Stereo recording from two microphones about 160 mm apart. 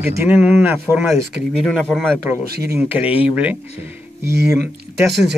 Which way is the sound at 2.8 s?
10° right (ahead or behind).